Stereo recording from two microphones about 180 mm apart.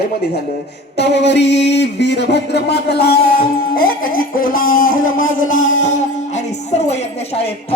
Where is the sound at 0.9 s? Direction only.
70° left (ahead or behind).